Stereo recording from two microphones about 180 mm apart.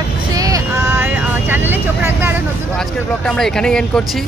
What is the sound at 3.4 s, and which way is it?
Speech, 5° left (ahead or behind).